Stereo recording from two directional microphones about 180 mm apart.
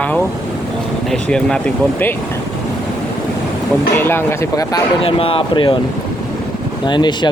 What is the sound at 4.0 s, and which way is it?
Speech, 15° left (ahead or behind).